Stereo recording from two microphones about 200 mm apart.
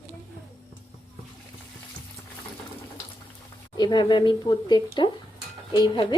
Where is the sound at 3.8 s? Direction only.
20° left (ahead or behind).